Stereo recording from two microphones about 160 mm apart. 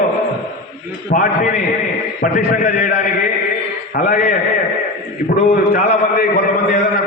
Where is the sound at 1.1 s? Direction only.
55° left (ahead or behind).